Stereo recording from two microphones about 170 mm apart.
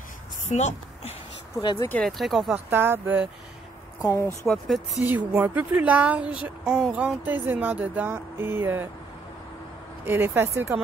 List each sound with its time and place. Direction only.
0.5 s a woman's voice: 40° left (ahead or behind)
1.6 s speech: 25° left (ahead or behind)
1.9 s speech: 5° left (ahead or behind)
2.7 s speech: 10° right (ahead or behind)
4.0 s speech: 20° left (ahead or behind)
4.5 s speech: centre (ahead or behind)
10.0 s speech: 15° right (ahead or behind)